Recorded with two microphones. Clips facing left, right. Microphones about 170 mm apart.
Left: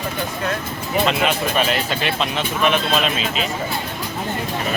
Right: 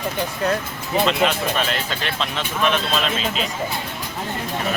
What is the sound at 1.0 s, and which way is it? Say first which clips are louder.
Speech: even; 10° left (ahead or behind).